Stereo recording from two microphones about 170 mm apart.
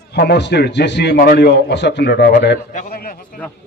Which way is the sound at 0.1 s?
90° left.